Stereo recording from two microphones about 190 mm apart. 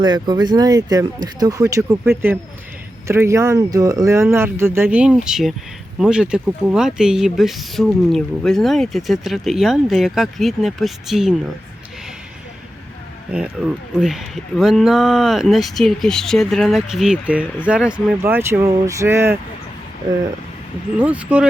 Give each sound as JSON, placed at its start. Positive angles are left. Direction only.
{"t": 0.0, "sound": "speech", "side_deg": -20}
{"t": 13.3, "sound": "speech", "side_deg": -5}
{"t": 21.0, "sound": "speech", "side_deg": -5}